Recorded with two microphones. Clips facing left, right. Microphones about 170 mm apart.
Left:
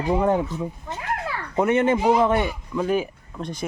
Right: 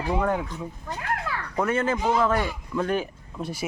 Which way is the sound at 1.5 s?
25° left (ahead or behind).